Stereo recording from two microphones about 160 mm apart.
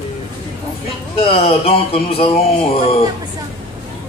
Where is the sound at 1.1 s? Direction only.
35° left (ahead or behind).